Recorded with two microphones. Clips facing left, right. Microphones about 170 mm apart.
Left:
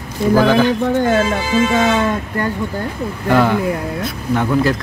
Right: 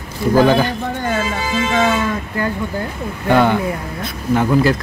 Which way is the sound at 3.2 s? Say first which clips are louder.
Even; centre (ahead or behind).